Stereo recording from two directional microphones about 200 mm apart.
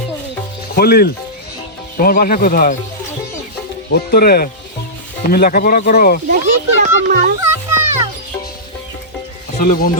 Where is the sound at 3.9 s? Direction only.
50° left (ahead or behind).